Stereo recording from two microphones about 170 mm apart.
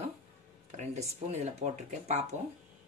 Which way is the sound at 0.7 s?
40° right (ahead or behind).